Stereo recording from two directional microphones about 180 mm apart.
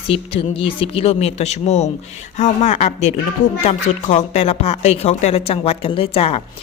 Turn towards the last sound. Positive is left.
turn(degrees=35)  # may be behind; listen again after turning